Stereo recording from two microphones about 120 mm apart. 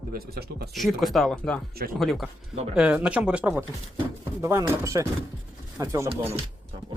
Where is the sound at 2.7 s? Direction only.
10° right (ahead or behind).